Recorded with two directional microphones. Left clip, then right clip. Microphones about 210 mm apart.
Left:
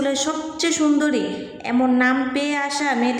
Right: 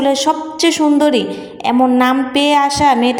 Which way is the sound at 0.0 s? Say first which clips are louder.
Right 8 dB; 25° right (ahead or behind).